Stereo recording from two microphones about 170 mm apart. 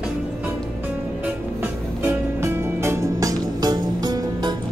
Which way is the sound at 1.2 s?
10° right (ahead or behind).